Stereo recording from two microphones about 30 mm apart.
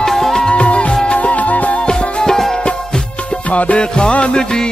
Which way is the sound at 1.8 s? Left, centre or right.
Centre.